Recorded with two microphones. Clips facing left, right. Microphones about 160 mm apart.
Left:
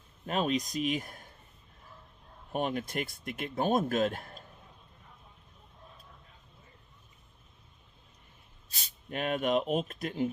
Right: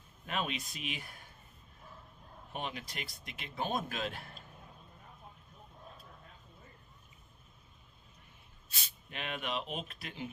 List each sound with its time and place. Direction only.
0.3 s speech: 40° left (ahead or behind)
2.5 s speech: 50° left (ahead or behind)
8.7 s speech: 45° left (ahead or behind)